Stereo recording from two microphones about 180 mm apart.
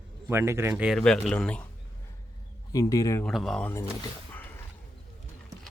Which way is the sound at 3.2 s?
Centre (ahead or behind).